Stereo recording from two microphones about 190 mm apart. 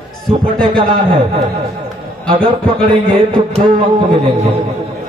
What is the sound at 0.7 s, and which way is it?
Speech, 30° right (ahead or behind).